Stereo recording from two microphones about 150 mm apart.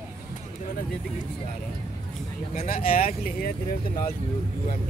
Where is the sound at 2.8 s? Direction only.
40° left (ahead or behind).